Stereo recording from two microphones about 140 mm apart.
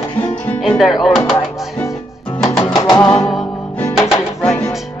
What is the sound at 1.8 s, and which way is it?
Music, 15° left (ahead or behind).